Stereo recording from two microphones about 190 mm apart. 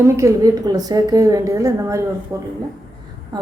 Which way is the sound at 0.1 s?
15° right (ahead or behind).